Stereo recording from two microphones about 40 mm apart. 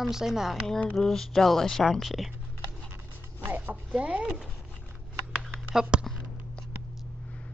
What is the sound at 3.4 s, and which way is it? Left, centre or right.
Chopping, right.